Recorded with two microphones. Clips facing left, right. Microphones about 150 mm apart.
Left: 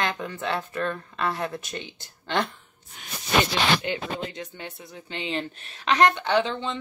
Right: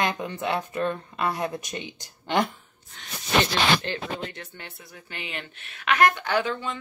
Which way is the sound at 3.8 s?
15° left (ahead or behind).